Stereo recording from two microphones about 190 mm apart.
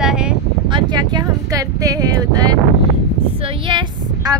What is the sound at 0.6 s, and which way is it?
Speech, 25° right (ahead or behind).